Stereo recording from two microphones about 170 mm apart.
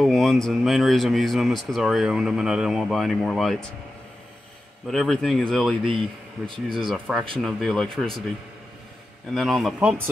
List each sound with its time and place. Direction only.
0.0 s speech: centre (ahead or behind)
4.8 s speech: centre (ahead or behind)
5.9 s a man's voice: 30° right (ahead or behind)
6.9 s speech: centre (ahead or behind)
9.3 s speech: centre (ahead or behind)